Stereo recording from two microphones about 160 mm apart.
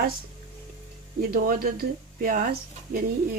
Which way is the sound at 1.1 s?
65° right (ahead or behind).